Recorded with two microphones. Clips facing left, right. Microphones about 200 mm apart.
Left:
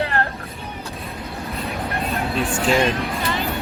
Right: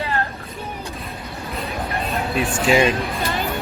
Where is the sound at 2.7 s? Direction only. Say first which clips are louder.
Right 2 dB; 5° right (ahead or behind).